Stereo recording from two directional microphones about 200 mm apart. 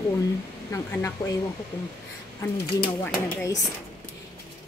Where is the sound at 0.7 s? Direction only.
15° left (ahead or behind).